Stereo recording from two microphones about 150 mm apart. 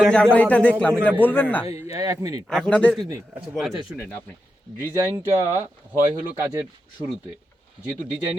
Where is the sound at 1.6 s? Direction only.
20° right (ahead or behind).